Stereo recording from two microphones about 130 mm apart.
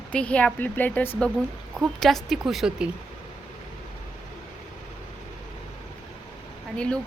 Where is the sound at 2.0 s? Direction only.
Centre (ahead or behind).